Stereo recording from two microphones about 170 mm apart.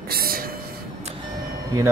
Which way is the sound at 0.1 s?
60° right (ahead or behind).